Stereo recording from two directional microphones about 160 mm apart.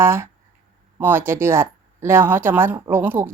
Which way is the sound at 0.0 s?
15° right (ahead or behind).